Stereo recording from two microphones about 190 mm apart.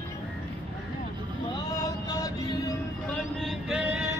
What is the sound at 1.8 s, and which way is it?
Music, 20° left (ahead or behind).